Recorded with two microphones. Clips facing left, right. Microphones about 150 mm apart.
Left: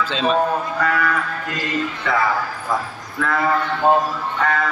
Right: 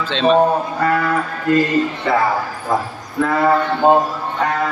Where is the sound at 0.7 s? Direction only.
35° right (ahead or behind).